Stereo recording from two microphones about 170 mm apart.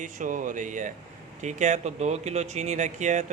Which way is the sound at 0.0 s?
50° right (ahead or behind).